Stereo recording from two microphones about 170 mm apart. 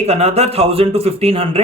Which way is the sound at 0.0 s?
40° right (ahead or behind).